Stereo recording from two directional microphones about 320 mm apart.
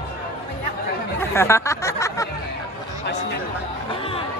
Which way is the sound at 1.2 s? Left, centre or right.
Centre.